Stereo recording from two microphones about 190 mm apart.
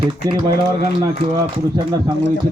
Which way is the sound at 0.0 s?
25° right (ahead or behind).